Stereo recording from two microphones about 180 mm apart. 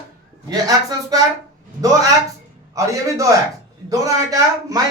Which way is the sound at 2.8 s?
20° right (ahead or behind).